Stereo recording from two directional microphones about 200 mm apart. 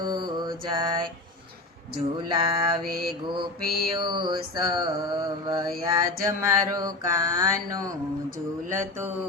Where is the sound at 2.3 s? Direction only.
20° right (ahead or behind).